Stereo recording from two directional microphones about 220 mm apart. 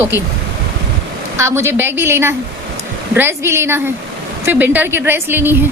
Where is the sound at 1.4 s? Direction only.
10° right (ahead or behind).